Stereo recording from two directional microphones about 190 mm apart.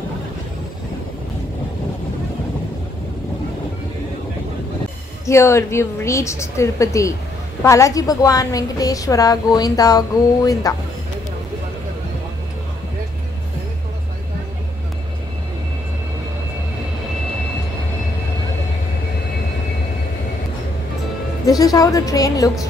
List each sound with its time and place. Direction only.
5.2 s a woman's voice: 15° left (ahead or behind)
21.5 s a woman's voice: 20° left (ahead or behind)